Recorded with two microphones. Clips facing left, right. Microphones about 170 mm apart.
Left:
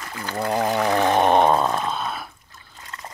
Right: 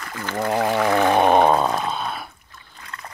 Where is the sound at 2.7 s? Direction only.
25° left (ahead or behind).